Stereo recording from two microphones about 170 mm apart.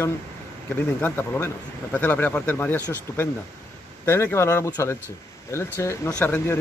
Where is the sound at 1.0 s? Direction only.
10° left (ahead or behind).